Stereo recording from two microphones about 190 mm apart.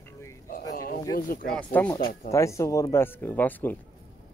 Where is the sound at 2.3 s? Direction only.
15° left (ahead or behind).